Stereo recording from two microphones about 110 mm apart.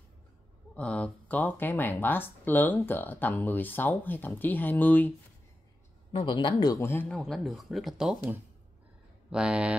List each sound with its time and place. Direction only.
0.7 s speech: 10° left (ahead or behind)
6.1 s speech: 45° left (ahead or behind)
6.8 s speech: 25° left (ahead or behind)
7.1 s speech: 5° left (ahead or behind)
9.3 s speech: 10° right (ahead or behind)